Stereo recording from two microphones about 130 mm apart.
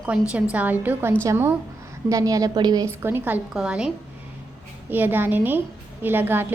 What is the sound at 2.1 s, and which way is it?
Speech, 25° right (ahead or behind).